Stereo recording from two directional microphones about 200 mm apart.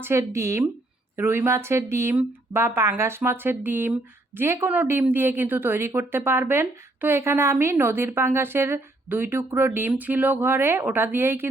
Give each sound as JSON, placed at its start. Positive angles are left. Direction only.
{"t": 0.0, "sound": "a woman's voice", "side_deg": -15}